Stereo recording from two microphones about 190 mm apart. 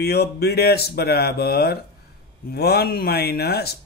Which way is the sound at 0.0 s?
55° left (ahead or behind).